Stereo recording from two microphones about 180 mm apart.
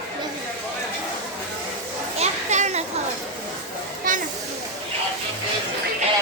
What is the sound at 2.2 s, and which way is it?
Children playing, 40° right (ahead or behind).